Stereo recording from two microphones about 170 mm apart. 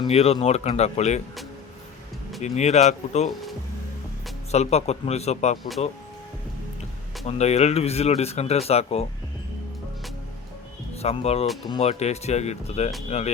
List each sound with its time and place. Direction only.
0.1 s speech: 35° left (ahead or behind)
2.4 s speech: 40° left (ahead or behind)
4.5 s speech: 40° left (ahead or behind)
7.3 s speech: 40° left (ahead or behind)
11.0 s speech: 40° left (ahead or behind)